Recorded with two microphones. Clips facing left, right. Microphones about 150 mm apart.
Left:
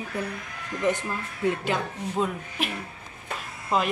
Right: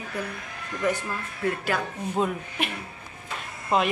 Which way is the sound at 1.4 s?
20° left (ahead or behind).